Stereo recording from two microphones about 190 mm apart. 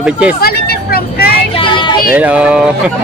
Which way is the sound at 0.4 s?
55° left (ahead or behind).